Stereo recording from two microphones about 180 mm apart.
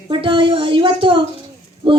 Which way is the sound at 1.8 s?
30° right (ahead or behind).